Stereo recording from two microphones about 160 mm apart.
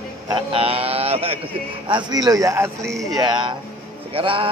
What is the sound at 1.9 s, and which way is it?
Speech, 25° right (ahead or behind).